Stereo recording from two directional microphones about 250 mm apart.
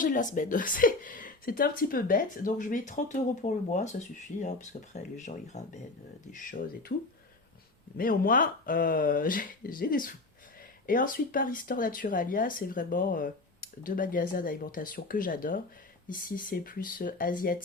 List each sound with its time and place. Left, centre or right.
0.0 s a woman's voice: left
7.9 s a woman's voice: left